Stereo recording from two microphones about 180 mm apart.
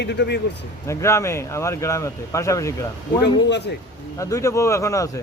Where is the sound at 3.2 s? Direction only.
70° left (ahead or behind).